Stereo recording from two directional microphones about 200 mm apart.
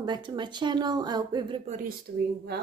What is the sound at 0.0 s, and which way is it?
Speech, 20° right (ahead or behind).